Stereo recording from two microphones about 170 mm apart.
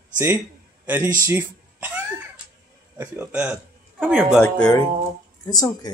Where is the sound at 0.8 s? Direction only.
10° right (ahead or behind).